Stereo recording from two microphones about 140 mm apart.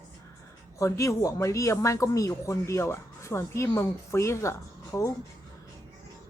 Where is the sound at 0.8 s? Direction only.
20° left (ahead or behind).